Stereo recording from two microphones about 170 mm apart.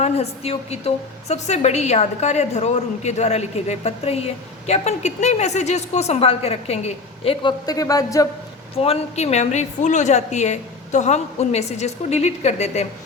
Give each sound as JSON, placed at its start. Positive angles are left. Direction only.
{"t": 0.0, "sound": "a woman's voice", "side_deg": 40}
{"t": 7.6, "sound": "speech", "side_deg": 20}
{"t": 8.7, "sound": "a woman's voice", "side_deg": 35}